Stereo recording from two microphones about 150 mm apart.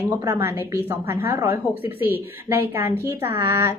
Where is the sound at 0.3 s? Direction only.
15° right (ahead or behind).